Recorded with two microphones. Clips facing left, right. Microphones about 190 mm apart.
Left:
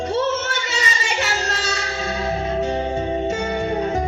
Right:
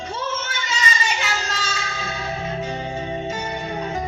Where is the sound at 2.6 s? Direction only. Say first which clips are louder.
Left 6 dB; 30° left (ahead or behind).